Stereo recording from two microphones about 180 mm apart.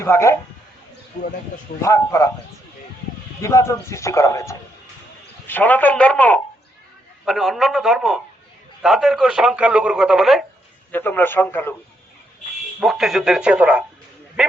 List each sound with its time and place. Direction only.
0.0 s a man's voice: 15° left (ahead or behind)
1.8 s a man's voice: 15° left (ahead or behind)
3.4 s a man's voice: 15° left (ahead or behind); by 10.4 s centre (ahead or behind)
10.9 s a man's voice: 10° left (ahead or behind)
12.8 s speech: centre (ahead or behind)